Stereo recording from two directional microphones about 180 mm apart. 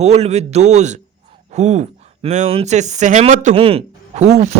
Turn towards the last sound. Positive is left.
turn(degrees=-40)  # may be behind; listen again after turning